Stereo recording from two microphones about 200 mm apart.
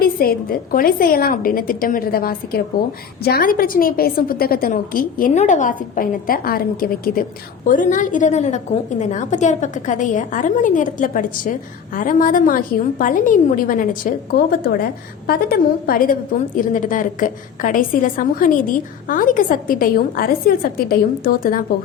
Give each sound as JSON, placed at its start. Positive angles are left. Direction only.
{"t": 0.0, "sound": "a woman's voice", "side_deg": 45}